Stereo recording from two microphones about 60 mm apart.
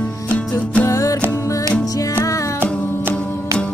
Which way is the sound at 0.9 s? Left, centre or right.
Left.